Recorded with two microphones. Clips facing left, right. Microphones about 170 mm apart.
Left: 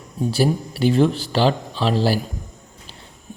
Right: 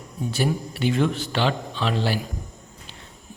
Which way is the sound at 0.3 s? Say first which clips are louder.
Left 5 dB; 35° left (ahead or behind).